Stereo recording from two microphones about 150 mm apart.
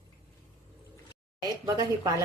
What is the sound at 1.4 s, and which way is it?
Speech, 25° right (ahead or behind).